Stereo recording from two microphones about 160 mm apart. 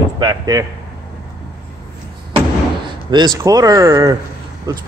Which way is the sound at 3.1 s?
25° right (ahead or behind).